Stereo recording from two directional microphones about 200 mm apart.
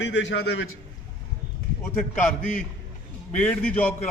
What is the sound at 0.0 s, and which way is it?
Speech, 60° left (ahead or behind).